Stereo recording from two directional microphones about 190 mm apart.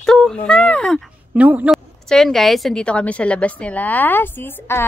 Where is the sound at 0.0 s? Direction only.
Centre (ahead or behind).